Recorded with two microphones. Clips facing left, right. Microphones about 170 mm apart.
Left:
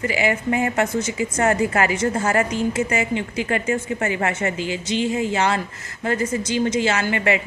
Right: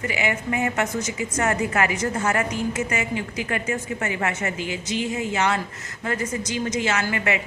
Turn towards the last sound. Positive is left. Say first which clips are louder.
# left 3 dB
turn(degrees=30)  # may be behind; listen again after turning